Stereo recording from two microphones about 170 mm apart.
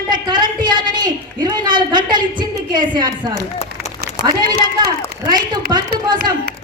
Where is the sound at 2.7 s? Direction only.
25° right (ahead or behind).